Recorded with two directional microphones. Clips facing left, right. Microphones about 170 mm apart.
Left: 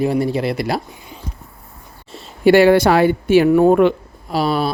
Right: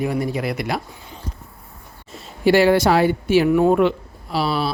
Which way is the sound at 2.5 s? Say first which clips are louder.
Left 4 dB; 60° left (ahead or behind).